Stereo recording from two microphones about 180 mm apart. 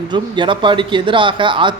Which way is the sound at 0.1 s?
25° right (ahead or behind).